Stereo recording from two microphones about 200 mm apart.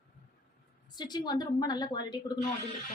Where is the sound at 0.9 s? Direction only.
20° left (ahead or behind).